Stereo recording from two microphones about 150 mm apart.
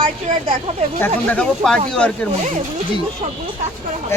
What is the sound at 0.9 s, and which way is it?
Speech, 10° left (ahead or behind).